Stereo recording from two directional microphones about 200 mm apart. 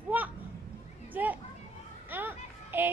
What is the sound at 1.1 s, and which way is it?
Speech, 10° right (ahead or behind).